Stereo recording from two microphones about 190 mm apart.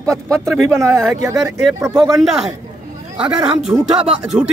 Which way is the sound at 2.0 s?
Centre (ahead or behind).